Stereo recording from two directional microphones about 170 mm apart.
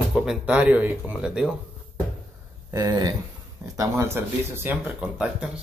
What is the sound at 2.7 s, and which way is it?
Speech, 20° right (ahead or behind).